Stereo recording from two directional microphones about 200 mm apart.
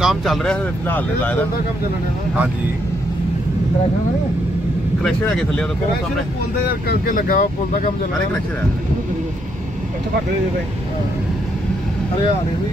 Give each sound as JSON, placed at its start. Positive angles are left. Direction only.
{"t": 0.0, "sound": "speech", "side_deg": 0}
{"t": 5.0, "sound": "speech", "side_deg": 5}
{"t": 6.7, "sound": "speech", "side_deg": 45}